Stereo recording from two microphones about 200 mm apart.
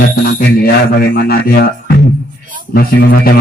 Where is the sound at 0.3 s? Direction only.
50° left (ahead or behind).